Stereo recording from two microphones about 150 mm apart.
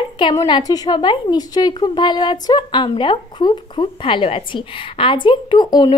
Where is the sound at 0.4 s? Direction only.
25° left (ahead or behind).